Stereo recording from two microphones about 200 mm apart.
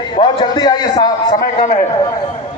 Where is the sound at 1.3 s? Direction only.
40° left (ahead or behind).